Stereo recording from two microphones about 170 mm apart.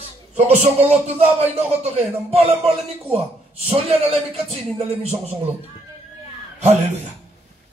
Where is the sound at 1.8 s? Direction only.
35° right (ahead or behind).